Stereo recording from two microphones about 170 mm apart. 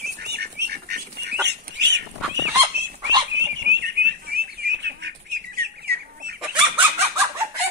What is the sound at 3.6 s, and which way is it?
Bird, 80° right.